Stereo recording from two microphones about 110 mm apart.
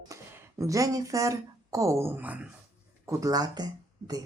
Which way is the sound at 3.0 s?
30° right (ahead or behind).